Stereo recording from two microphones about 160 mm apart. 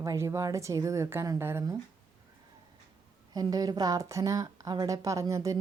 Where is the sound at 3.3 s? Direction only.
25° right (ahead or behind).